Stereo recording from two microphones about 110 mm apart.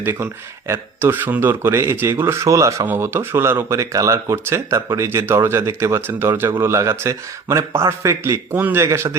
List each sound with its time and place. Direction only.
0.0 s speech: 20° right (ahead or behind)